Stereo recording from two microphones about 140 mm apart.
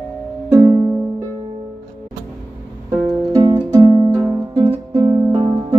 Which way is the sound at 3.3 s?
30° right (ahead or behind).